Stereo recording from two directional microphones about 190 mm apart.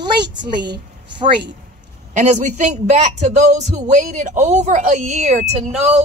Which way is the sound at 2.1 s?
40° right (ahead or behind).